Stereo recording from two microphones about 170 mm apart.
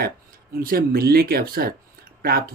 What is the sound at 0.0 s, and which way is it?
Speech, 60° right (ahead or behind).